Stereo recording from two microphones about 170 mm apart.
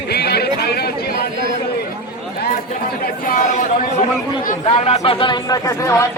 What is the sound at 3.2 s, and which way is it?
Speech, 50° left (ahead or behind).